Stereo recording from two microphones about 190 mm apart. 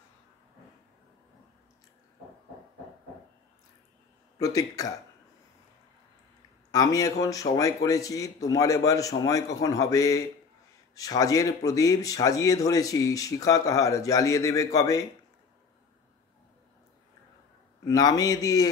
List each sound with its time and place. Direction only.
4.4 s speech: 15° left (ahead or behind)
6.7 s speech: 20° left (ahead or behind)
17.8 s a man's voice: 20° left (ahead or behind)